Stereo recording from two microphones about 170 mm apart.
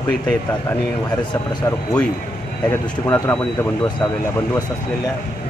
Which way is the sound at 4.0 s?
20° left (ahead or behind).